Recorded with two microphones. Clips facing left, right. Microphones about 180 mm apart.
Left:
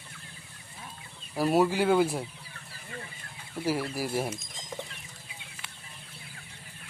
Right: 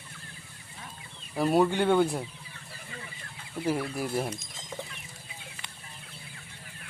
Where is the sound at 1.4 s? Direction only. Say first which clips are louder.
Even; 5° left (ahead or behind).